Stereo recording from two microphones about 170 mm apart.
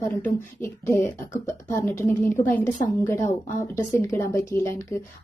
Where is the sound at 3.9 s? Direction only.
15° left (ahead or behind).